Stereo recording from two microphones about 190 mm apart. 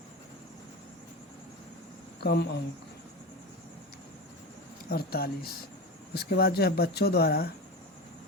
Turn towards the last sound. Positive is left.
turn(degrees=55)  # may be behind; listen again after turning